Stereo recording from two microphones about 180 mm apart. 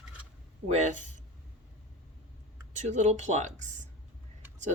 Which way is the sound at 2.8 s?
40° right (ahead or behind).